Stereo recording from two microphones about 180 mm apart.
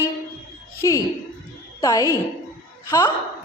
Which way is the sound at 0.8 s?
15° left (ahead or behind).